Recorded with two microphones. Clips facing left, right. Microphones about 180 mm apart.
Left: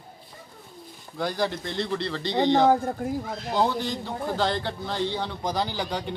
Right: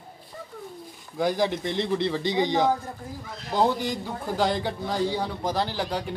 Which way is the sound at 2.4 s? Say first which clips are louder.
Left 4 dB; 60° left (ahead or behind).